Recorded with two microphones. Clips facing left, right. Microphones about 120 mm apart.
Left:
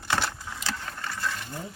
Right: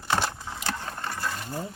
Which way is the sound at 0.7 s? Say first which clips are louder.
Right 2 dB; 35° right (ahead or behind).